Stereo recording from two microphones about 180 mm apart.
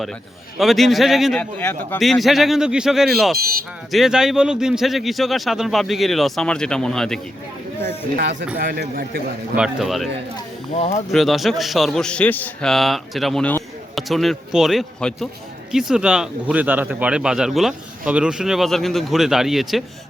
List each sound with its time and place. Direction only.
0.6 s a man's voice: centre (ahead or behind)
1.5 s speech: 10° left (ahead or behind)
2.0 s a man's voice: centre (ahead or behind)
8.1 s speech: 70° right (ahead or behind)
8.5 s a man's voice: 55° right (ahead or behind)
9.6 s a man's voice: 5° right (ahead or behind)
10.3 s speech: 35° left (ahead or behind)
11.1 s a man's voice: centre (ahead or behind)